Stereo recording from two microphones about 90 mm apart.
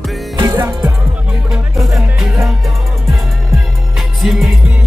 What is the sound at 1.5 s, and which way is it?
Music, centre (ahead or behind).